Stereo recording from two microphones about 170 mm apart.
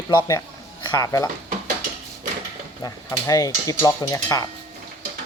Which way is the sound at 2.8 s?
20° left (ahead or behind).